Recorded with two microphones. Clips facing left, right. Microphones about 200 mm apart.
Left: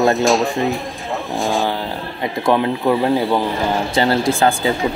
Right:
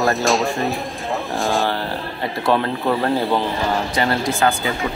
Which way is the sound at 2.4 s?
15° left (ahead or behind).